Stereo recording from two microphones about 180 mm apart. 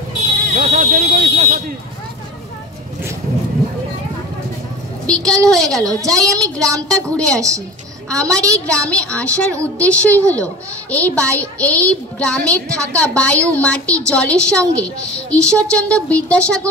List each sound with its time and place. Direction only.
0.6 s speech: 55° right (ahead or behind)
5.0 s a woman's voice: 5° left (ahead or behind)
7.3 s a woman's voice: 20° right (ahead or behind)
8.1 s a woman's voice: 5° left (ahead or behind)